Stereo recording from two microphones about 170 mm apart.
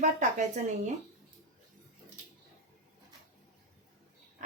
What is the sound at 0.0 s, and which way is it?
Speech, 45° right (ahead or behind).